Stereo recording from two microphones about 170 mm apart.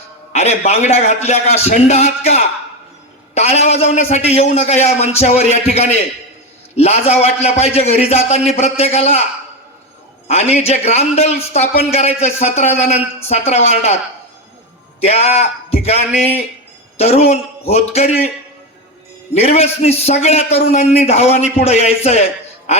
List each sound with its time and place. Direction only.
0.3 s a man's voice: 40° left (ahead or behind)
10.2 s a man's voice: 40° left (ahead or behind)
15.0 s a man's voice: 40° left (ahead or behind)
19.3 s a man's voice: 35° left (ahead or behind)